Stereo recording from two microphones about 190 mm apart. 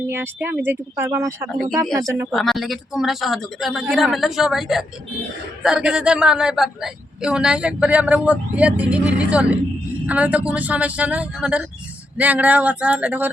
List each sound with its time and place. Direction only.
0.1 s speech: 10° right (ahead or behind)
2.3 s a man's voice: centre (ahead or behind)